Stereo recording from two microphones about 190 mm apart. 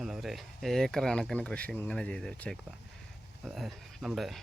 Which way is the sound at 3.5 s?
Centre (ahead or behind).